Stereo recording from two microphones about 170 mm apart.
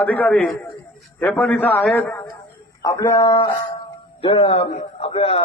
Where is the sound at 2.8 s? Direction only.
20° left (ahead or behind).